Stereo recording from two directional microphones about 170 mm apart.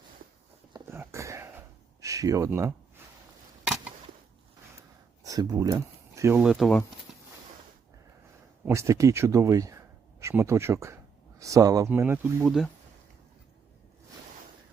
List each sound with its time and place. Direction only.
0.7 s a sound: 15° right (ahead or behind)
5.2 s speech: 20° right (ahead or behind)
6.4 s speech: centre (ahead or behind)
8.6 s speech: 15° right (ahead or behind)